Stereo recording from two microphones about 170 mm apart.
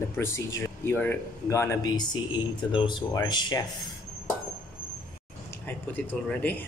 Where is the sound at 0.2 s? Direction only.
15° left (ahead or behind).